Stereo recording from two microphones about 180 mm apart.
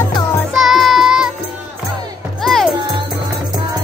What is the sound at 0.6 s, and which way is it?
Music, centre (ahead or behind).